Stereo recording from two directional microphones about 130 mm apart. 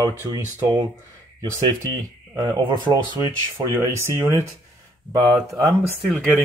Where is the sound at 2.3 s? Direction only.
30° right (ahead or behind).